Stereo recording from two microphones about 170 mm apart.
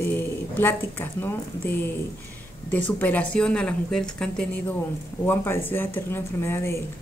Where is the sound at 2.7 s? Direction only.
10° left (ahead or behind).